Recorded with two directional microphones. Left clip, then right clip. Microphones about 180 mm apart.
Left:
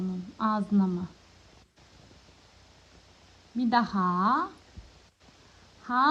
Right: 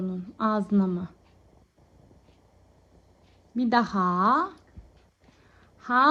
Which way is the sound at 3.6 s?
20° left (ahead or behind).